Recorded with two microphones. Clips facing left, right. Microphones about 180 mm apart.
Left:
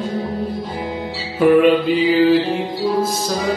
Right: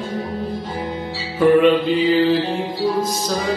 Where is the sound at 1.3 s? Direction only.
10° left (ahead or behind).